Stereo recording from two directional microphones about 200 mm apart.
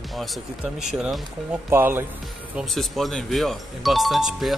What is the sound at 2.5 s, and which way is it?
Speech, centre (ahead or behind).